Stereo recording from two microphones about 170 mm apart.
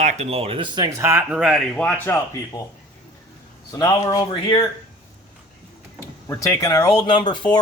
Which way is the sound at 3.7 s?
20° left (ahead or behind).